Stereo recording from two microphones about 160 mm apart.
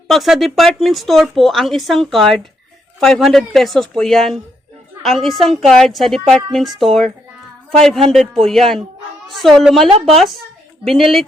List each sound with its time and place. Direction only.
0.1 s speech: centre (ahead or behind)